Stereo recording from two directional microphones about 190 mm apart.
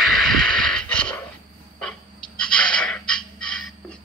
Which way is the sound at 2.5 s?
5° left (ahead or behind).